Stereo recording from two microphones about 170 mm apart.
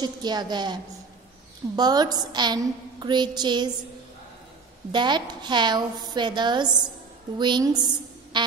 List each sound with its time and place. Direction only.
0.0 s a woman's voice: 25° right (ahead or behind)
1.8 s a woman's voice: 25° right (ahead or behind)
4.9 s a woman's voice: 25° right (ahead or behind)